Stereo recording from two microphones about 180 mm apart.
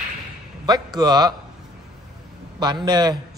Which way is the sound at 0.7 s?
20° right (ahead or behind).